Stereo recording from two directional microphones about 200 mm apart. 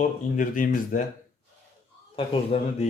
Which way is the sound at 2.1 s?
30° left (ahead or behind).